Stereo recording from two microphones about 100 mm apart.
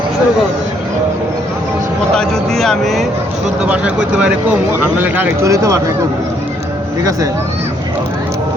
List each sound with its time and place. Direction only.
2.1 s speech: 5° left (ahead or behind)
3.6 s speech: 10° right (ahead or behind)
5.4 s speech: 30° right (ahead or behind)